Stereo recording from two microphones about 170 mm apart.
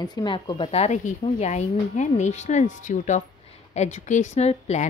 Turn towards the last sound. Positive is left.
turn(degrees=40)  # may be behind; listen again after turning